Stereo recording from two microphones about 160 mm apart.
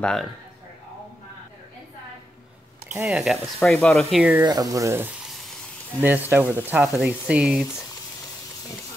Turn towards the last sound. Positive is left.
turn(degrees=-5)  # may be behind; listen again after turning